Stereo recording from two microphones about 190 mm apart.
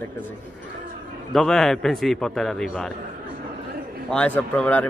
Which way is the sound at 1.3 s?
Centre (ahead or behind).